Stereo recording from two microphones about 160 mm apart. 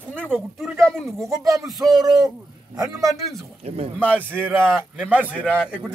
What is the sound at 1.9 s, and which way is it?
Speech, 25° right (ahead or behind).